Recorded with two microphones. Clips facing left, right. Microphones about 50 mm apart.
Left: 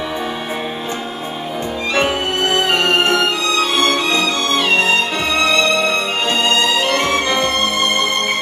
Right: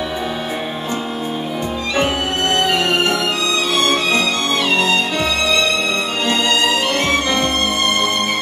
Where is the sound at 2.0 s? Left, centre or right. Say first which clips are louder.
Left 1 dB; centre.